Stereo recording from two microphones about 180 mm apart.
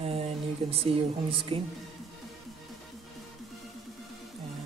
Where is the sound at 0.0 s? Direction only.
35° right (ahead or behind).